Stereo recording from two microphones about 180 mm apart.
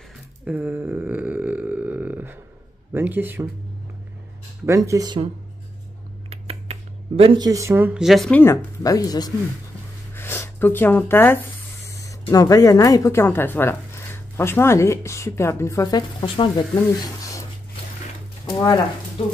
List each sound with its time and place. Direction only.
0.5 s a sound: 10° right (ahead or behind)
2.9 s speech: 10° right (ahead or behind)
4.6 s speech: 15° right (ahead or behind)
6.3 s speech: 35° right (ahead or behind); by 17.4 s 20° left (ahead or behind)
18.5 s speech: 20° left (ahead or behind)